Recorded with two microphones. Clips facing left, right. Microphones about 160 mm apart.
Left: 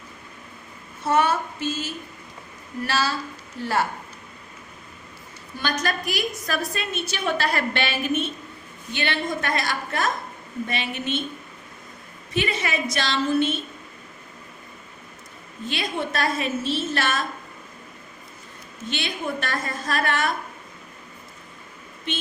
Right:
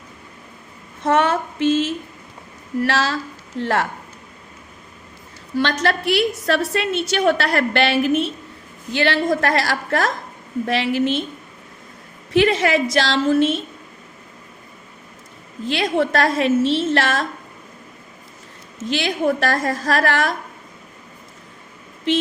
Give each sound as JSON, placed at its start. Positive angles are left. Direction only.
{"t": 1.0, "sound": "a sound", "side_deg": -90}
{"t": 2.8, "sound": "a woman's voice", "side_deg": -90}
{"t": 5.5, "sound": "a woman's voice", "side_deg": -90}
{"t": 12.3, "sound": "a woman's voice", "side_deg": -90}
{"t": 15.6, "sound": "a woman's voice", "side_deg": -90}
{"t": 18.8, "sound": "a woman's voice", "side_deg": -90}